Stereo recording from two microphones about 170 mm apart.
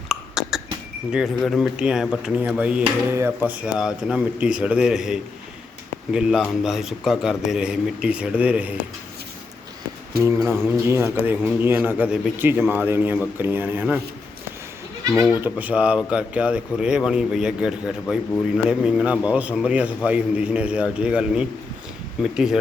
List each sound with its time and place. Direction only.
0.1 s cough: centre (ahead or behind)
1.1 s speech: centre (ahead or behind)
10.2 s a man's voice: 15° right (ahead or behind)
15.3 s a man's voice: 10° right (ahead or behind)